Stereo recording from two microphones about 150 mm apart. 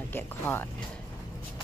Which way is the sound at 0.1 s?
15° left (ahead or behind).